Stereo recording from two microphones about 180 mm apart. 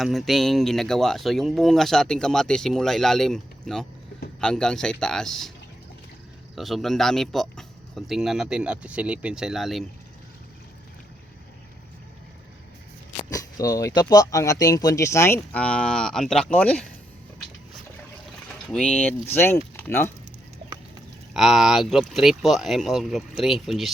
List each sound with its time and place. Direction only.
0.0 s speech: centre (ahead or behind)
6.6 s speech: centre (ahead or behind)
13.1 s speech: 20° left (ahead or behind)
18.7 s speech: 5° left (ahead or behind)
21.3 s speech: centre (ahead or behind)